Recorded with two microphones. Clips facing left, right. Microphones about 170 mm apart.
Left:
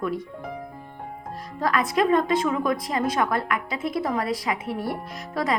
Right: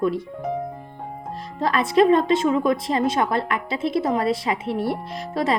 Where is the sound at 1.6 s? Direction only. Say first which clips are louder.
Right 5 dB; 30° right (ahead or behind).